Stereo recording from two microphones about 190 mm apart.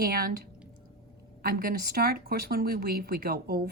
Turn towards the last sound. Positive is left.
turn(degrees=-55)  # may be behind; listen again after turning